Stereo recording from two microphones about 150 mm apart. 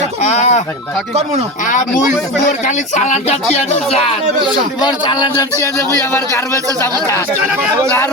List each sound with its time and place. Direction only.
0.2 s a sound: 55° left (ahead or behind)
1.6 s speech: 60° left (ahead or behind); by 4.1 s 45° left (ahead or behind)
4.8 s speech: 30° left (ahead or behind)